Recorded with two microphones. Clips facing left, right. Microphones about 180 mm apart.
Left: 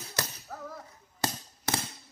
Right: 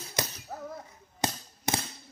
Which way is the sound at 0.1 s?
20° right (ahead or behind).